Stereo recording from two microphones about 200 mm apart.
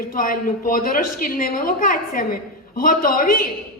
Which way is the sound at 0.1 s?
45° left (ahead or behind).